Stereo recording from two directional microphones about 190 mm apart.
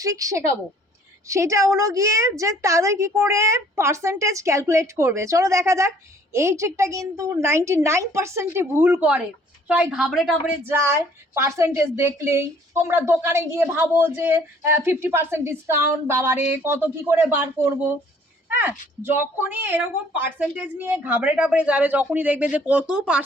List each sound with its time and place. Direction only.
0.0 s a woman's voice: 15° right (ahead or behind); by 10.5 s centre (ahead or behind)
10.7 s a woman's voice: 10° right (ahead or behind)